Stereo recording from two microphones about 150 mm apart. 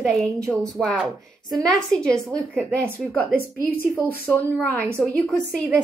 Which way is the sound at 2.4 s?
15° right (ahead or behind).